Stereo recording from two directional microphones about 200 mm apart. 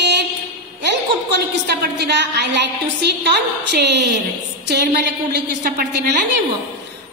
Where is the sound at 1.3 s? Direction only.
60° right (ahead or behind).